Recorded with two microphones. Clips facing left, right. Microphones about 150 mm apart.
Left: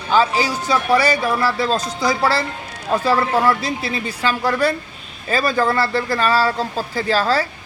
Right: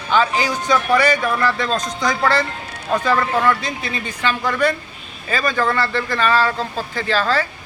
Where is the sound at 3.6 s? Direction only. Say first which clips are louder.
Left 3 dB; 35° left (ahead or behind).